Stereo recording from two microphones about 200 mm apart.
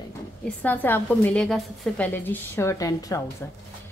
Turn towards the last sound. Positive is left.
turn(degrees=15)  # may be behind; listen again after turning